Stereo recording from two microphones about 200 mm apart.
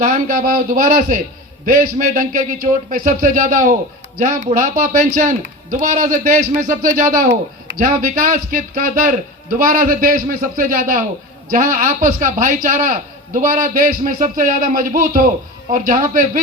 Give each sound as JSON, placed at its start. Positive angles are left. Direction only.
{"t": 0.0, "sound": "a man's voice", "side_deg": -45}